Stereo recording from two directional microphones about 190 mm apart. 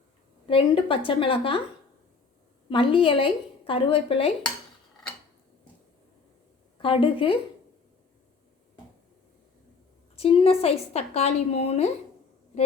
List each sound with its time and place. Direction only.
0.4 s speech: 30° left (ahead or behind)
2.6 s speech: 30° left (ahead or behind)
6.8 s speech: 25° left (ahead or behind)
10.2 s a woman's voice: 30° left (ahead or behind)